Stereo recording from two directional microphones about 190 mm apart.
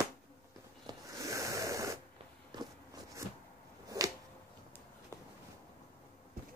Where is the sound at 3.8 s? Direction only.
20° right (ahead or behind).